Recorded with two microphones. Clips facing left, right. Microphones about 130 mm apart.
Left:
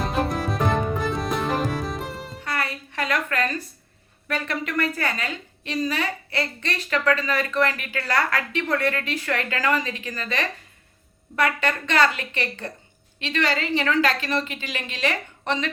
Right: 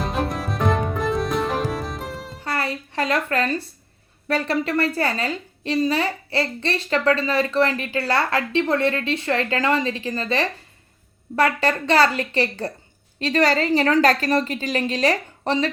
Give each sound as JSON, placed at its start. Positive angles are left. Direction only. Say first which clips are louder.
{"t": 0.0, "sound": "music", "louder": "even", "side_deg": 0}
{"t": 2.4, "sound": "music", "louder": "right 3 dB", "side_deg": -30}
{"t": 4.3, "sound": "a woman's voice", "louder": "right 6 dB", "side_deg": -35}